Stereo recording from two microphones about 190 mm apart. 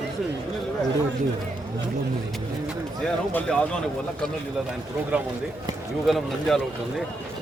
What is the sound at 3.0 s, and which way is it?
Speech, 5° left (ahead or behind).